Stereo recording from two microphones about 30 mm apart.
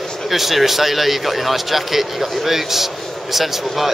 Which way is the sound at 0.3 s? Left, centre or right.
Centre.